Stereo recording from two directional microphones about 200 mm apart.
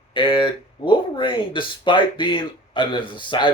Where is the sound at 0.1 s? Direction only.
25° left (ahead or behind).